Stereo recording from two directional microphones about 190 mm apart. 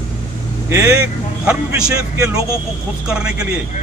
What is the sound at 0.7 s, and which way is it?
A man's voice, 15° right (ahead or behind).